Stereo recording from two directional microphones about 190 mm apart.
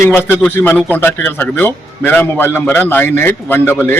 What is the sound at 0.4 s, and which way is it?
A man's voice, 10° left (ahead or behind).